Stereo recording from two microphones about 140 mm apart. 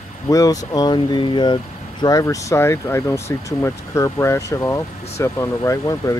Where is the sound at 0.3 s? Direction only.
25° left (ahead or behind).